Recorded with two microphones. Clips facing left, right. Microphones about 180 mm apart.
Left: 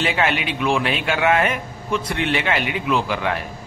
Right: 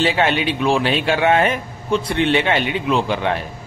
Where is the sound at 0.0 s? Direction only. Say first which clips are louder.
Right 4 dB; 30° right (ahead or behind).